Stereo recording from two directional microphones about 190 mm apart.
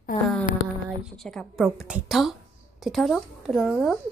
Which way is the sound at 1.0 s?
Centre (ahead or behind).